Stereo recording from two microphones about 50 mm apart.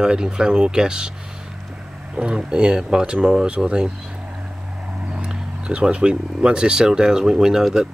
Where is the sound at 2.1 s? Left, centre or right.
Centre.